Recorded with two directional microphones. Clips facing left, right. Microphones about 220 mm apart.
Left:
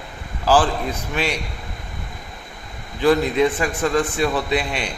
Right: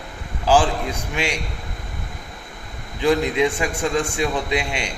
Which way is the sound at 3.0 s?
15° right (ahead or behind).